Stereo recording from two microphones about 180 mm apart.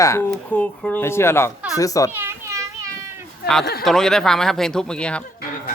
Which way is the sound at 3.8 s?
Centre (ahead or behind).